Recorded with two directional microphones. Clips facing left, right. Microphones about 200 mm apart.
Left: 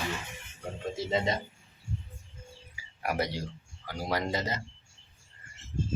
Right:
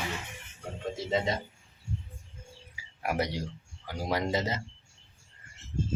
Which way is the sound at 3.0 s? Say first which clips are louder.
Right 1 dB; 20° right (ahead or behind).